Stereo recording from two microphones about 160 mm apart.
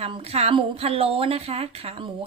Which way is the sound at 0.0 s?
40° right (ahead or behind).